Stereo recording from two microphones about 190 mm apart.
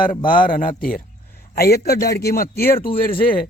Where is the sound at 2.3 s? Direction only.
50° left (ahead or behind).